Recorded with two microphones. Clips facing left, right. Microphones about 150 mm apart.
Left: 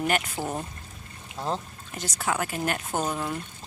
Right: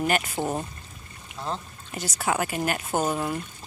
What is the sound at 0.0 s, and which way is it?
Speech, centre (ahead or behind).